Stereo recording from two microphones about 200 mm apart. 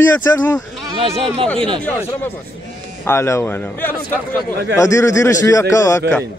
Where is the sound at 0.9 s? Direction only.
30° right (ahead or behind).